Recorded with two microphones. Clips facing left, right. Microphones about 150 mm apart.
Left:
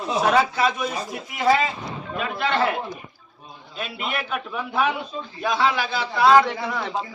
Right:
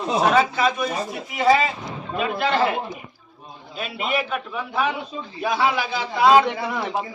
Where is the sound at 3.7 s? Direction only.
5° right (ahead or behind).